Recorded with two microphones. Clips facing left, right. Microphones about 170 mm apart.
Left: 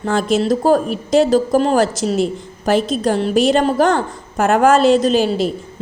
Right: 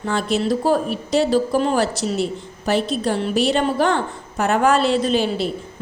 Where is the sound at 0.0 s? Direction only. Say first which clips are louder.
Left 4 dB; 45° left (ahead or behind).